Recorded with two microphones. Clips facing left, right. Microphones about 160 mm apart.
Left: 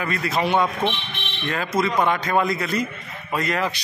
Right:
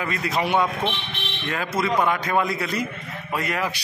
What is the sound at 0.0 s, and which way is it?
Speech, 15° right (ahead or behind).